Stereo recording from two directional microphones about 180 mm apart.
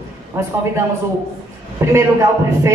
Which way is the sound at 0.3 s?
15° right (ahead or behind).